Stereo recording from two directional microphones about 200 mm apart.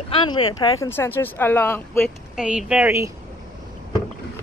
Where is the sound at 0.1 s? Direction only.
25° left (ahead or behind).